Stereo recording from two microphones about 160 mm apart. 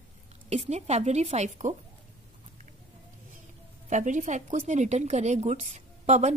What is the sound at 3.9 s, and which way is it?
A woman's voice, 50° right (ahead or behind).